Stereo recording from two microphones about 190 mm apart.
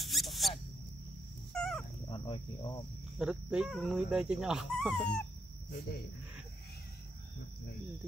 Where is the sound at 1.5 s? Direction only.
5° left (ahead or behind).